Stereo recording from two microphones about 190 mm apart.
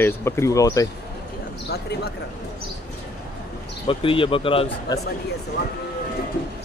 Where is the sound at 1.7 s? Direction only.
55° left (ahead or behind).